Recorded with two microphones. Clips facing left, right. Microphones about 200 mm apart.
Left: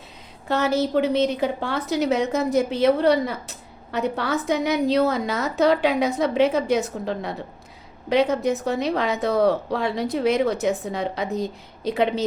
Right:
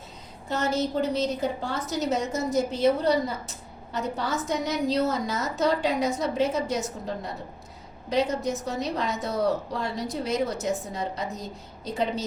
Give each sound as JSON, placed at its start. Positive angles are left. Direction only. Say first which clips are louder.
{"t": 0.4, "sound": "a woman's voice", "louder": "left 5 dB", "side_deg": 65}
{"t": 8.1, "sound": "a woman's voice", "louder": "left 5 dB", "side_deg": 60}